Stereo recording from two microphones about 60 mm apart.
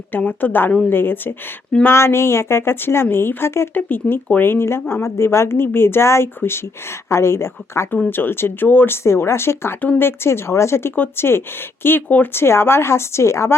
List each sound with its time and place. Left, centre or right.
0.1 s speech: left
3.8 s speech: left
8.0 s speech: left
9.0 s speech: left